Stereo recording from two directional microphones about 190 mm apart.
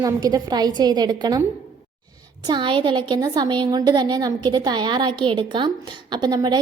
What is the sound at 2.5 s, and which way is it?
A woman's voice, 25° right (ahead or behind).